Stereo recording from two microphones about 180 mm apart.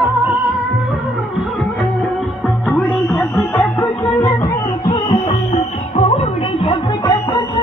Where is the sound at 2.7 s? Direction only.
Centre (ahead or behind).